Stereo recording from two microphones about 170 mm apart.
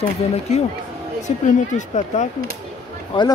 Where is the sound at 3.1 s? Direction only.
30° left (ahead or behind).